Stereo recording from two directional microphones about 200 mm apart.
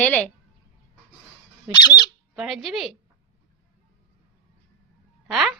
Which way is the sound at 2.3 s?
Centre (ahead or behind).